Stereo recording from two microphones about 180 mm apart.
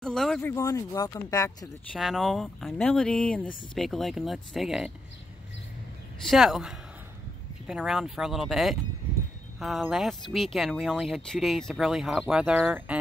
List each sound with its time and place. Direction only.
0.0 s speech: centre (ahead or behind)
0.4 s speech: 15° left (ahead or behind)
2.0 s speech: centre (ahead or behind)
6.2 s speech: centre (ahead or behind)